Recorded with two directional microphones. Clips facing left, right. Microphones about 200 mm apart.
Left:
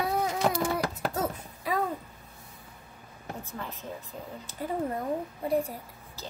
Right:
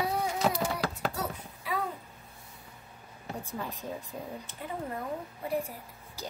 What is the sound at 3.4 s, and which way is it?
Speech, 15° right (ahead or behind).